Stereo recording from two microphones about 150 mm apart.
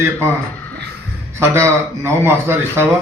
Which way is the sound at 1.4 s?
20° right (ahead or behind).